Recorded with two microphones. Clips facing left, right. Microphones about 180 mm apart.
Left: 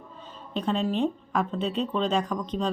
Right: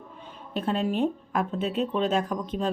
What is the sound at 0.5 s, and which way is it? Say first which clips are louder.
Speech: even; 5° right (ahead or behind).